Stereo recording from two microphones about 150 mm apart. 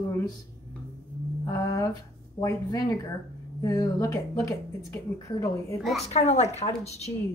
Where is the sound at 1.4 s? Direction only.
20° left (ahead or behind).